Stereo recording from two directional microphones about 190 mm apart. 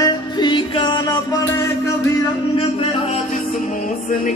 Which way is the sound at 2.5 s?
30° left (ahead or behind).